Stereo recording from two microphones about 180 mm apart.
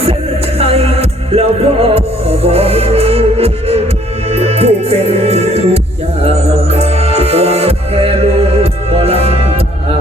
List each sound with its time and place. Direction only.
0.6 s music: 35° right (ahead or behind)